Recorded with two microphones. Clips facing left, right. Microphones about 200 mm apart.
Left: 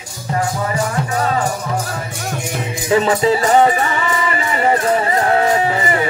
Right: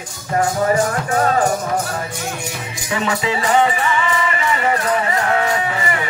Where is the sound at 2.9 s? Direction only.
35° left (ahead or behind).